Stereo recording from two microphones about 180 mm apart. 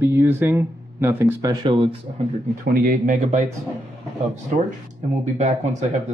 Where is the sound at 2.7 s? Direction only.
55° right (ahead or behind).